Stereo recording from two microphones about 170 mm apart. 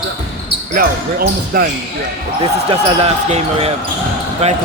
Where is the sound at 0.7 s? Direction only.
60° right (ahead or behind).